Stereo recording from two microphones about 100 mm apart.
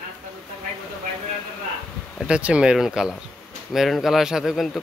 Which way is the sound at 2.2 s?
10° right (ahead or behind).